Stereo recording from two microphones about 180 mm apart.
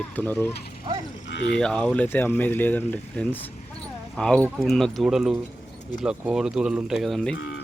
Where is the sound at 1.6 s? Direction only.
5° left (ahead or behind).